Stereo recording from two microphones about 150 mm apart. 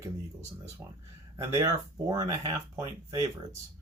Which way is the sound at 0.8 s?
20° right (ahead or behind).